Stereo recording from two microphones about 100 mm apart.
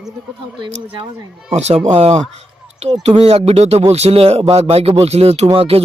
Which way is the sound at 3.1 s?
85° right.